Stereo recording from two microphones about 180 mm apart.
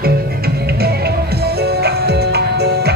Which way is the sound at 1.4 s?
65° right (ahead or behind).